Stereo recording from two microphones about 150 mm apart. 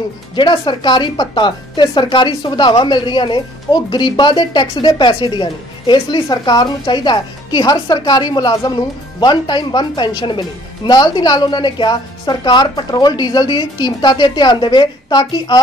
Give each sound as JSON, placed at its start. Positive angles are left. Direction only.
{"t": 0.4, "sound": "a woman's voice", "side_deg": 30}